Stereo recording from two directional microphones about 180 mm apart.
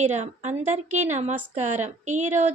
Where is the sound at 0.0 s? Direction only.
40° right (ahead or behind).